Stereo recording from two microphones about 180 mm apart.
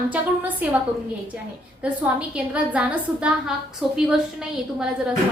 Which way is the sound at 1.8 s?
5° right (ahead or behind).